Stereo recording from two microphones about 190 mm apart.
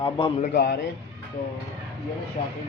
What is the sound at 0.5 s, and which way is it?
Speech, 60° left (ahead or behind).